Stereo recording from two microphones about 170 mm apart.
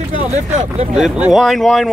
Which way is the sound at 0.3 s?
40° right (ahead or behind).